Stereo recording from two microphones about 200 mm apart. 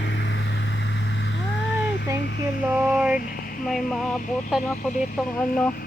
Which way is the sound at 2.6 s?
10° right (ahead or behind).